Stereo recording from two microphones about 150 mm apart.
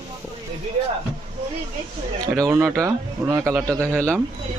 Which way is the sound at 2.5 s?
15° right (ahead or behind).